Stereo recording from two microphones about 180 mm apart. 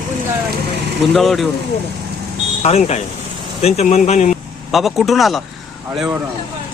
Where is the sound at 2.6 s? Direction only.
35° left (ahead or behind).